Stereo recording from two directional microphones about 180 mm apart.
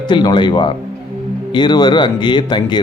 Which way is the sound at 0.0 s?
25° left (ahead or behind).